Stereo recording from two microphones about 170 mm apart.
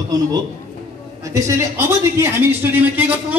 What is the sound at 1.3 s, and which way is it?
A man's voice, 20° right (ahead or behind).